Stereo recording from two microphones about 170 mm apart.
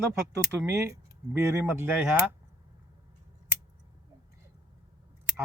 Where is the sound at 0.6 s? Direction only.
15° right (ahead or behind).